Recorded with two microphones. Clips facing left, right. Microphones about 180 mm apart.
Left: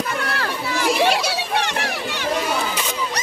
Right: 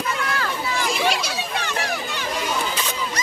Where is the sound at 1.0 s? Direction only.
65° left (ahead or behind).